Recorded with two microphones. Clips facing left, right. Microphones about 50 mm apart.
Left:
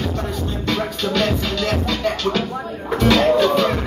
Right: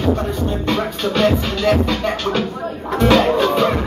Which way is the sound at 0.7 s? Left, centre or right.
Centre.